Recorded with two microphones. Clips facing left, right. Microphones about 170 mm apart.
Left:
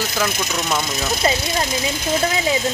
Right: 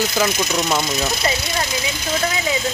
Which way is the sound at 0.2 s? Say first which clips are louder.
Right 2 dB; centre (ahead or behind).